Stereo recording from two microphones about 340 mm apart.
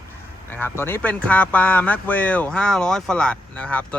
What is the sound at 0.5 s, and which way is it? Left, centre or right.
A man's voice, centre.